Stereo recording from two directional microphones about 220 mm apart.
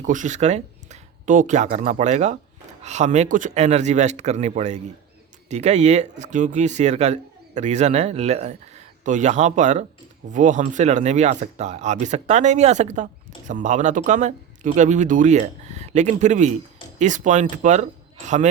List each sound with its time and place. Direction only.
0.0 s speech: 35° right (ahead or behind)